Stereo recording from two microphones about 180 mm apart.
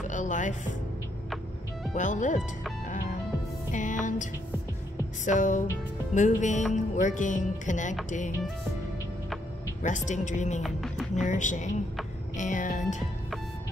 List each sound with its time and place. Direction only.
0.1 s speech: 45° left (ahead or behind)
2.0 s music: 45° left (ahead or behind)
3.7 s music: 45° left (ahead or behind)
9.8 s music: 45° left (ahead or behind)
10.6 s music: centre (ahead or behind)
11.1 s music: 45° left (ahead or behind)